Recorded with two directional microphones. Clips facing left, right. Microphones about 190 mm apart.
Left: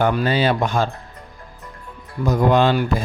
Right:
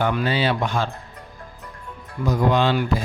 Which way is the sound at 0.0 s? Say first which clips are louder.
Left 3 dB; 40° left (ahead or behind).